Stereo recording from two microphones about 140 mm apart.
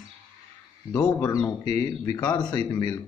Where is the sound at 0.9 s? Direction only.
20° left (ahead or behind).